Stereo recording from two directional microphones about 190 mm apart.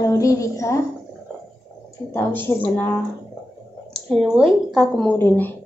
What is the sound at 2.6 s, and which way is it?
Speech, 10° left (ahead or behind).